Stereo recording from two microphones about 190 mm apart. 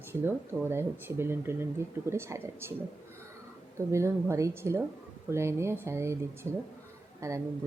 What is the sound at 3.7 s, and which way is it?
Speech, 15° right (ahead or behind).